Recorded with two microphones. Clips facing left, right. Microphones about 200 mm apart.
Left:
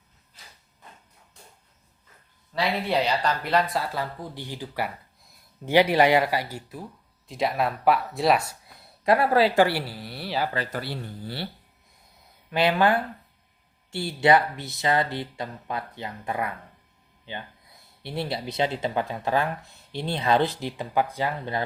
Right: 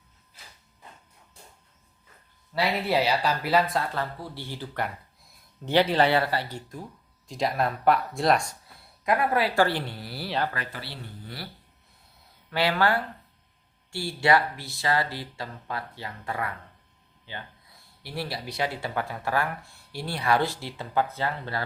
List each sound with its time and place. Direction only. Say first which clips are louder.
2.6 s speech: even; 5° right (ahead or behind)
3.9 s speech: left 1 dB; 15° left (ahead or behind)
9.0 s speech: left 4 dB; 30° left (ahead or behind)
9.6 s speech: left 3 dB; 10° left (ahead or behind)
10.7 s speech: left 8 dB; 50° left (ahead or behind)
12.5 s speech: left 3 dB; 20° left (ahead or behind)
18.0 s speech: left 4 dB; 25° left (ahead or behind)